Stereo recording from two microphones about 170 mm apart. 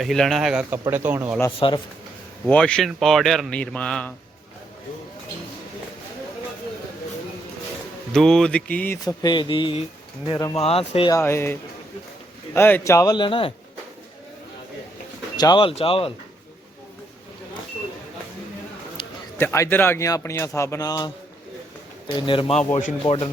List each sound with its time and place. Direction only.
0.0 s speech: centre (ahead or behind)
1.5 s speech: 30° left (ahead or behind)
2.5 s speech: 5° left (ahead or behind)
8.1 s speech: 5° left (ahead or behind)
9.0 s speech: 25° left (ahead or behind)
10.6 s a man's voice: 35° left (ahead or behind)
11.1 s speech: 15° left (ahead or behind)
12.5 s speech: 15° left (ahead or behind); by 13.5 s 30° left (ahead or behind)
15.4 s a man's voice: 25° left (ahead or behind)
19.4 s speech: 15° left (ahead or behind)
22.3 s a man's voice: 35° left (ahead or behind)